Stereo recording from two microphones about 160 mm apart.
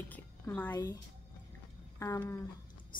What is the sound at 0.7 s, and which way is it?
A woman's voice, 25° left (ahead or behind).